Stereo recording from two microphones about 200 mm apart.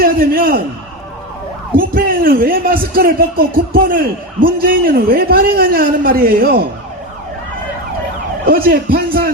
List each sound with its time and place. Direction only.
0.0 s a man's voice: 50° right (ahead or behind)
1.7 s speech: 45° right (ahead or behind)
8.4 s speech: 50° right (ahead or behind)